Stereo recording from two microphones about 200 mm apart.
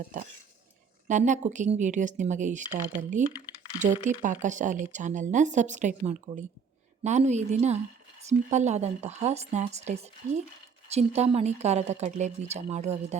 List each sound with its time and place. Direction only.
0.0 s dishes: 45° right (ahead or behind)
1.0 s speech: 40° right (ahead or behind)